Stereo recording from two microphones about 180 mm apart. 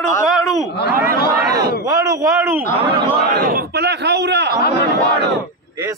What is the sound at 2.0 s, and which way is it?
Speech, 20° right (ahead or behind).